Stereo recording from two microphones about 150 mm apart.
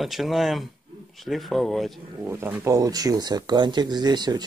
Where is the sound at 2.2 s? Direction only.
15° right (ahead or behind).